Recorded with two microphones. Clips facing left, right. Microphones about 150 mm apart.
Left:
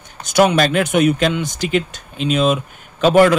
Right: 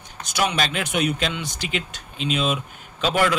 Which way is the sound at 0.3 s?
50° left (ahead or behind).